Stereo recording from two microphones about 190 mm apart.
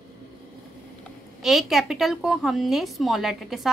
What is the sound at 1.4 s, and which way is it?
A woman's voice, centre (ahead or behind).